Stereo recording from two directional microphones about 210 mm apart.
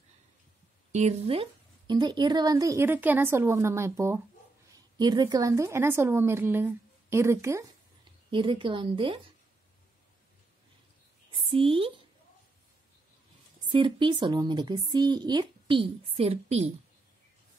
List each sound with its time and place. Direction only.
0.9 s a woman's voice: 30° right (ahead or behind); by 7.6 s 15° right (ahead or behind)
8.3 s a woman's voice: 25° right (ahead or behind)
11.3 s a woman's voice: 25° right (ahead or behind)
13.7 s a woman's voice: 25° right (ahead or behind)